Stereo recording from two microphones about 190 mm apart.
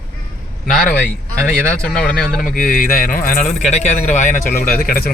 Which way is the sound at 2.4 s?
45° left (ahead or behind).